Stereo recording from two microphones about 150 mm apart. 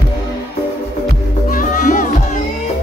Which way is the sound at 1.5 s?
60° left (ahead or behind).